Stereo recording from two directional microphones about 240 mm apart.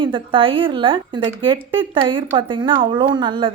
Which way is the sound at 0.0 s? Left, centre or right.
Right.